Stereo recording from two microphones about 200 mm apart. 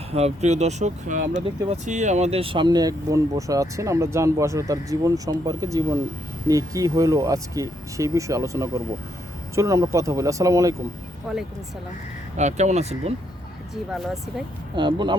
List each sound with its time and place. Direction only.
0.1 s speech: 30° right (ahead or behind); by 10.8 s 15° right (ahead or behind)
11.3 s speech: centre (ahead or behind)
12.4 s speech: 35° right (ahead or behind)
13.9 s speech: centre (ahead or behind)
14.8 s speech: 25° right (ahead or behind)